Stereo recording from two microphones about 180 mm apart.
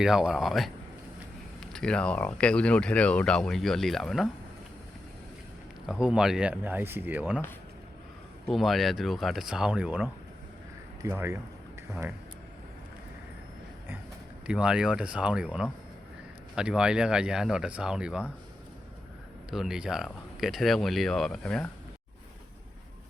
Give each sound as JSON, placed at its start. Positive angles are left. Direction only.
{"t": 0.0, "sound": "speech", "side_deg": -5}
{"t": 1.7, "sound": "speech", "side_deg": 5}
{"t": 5.8, "sound": "speech", "side_deg": -5}
{"t": 8.4, "sound": "speech", "side_deg": 0}
{"t": 14.4, "sound": "speech", "side_deg": -5}
{"t": 19.5, "sound": "speech", "side_deg": -5}